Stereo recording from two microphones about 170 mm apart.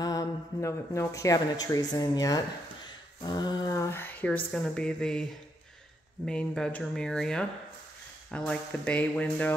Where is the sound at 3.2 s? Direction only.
25° left (ahead or behind); by 5.2 s 5° left (ahead or behind).